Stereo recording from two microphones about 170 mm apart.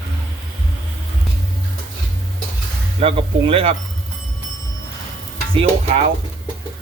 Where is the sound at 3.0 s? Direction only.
35° right (ahead or behind).